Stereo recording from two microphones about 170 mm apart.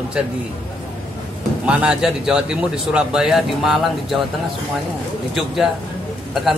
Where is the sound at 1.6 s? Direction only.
5° right (ahead or behind).